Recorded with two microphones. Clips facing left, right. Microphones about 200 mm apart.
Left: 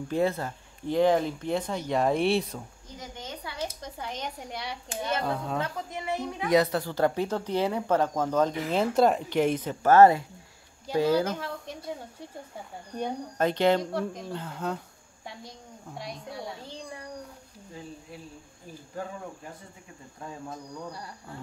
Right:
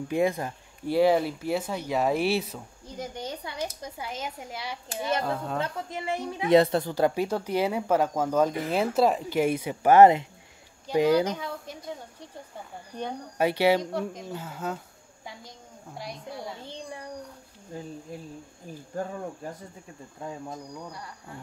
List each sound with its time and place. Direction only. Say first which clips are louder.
0.1 s a woman's voice: right 1 dB; 15° right (ahead or behind)
5.9 s a woman's voice: right 1 dB; 25° right (ahead or behind)
11.3 s speech: even; centre (ahead or behind)
13.4 s speech: right 1 dB; 10° right (ahead or behind)
18.1 s speech: right 5 dB; 45° right (ahead or behind)
20.2 s speech: right 3 dB; 20° right (ahead or behind)